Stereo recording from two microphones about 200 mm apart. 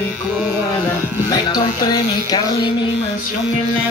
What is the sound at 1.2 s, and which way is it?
Speech, 20° left (ahead or behind).